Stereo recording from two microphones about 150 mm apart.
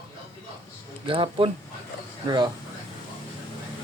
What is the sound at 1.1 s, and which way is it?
Speech, 35° right (ahead or behind).